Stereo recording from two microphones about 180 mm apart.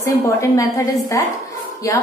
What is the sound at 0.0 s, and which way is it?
A woman's voice, 15° left (ahead or behind).